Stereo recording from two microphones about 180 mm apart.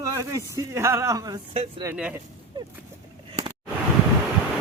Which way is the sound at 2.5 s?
25° right (ahead or behind).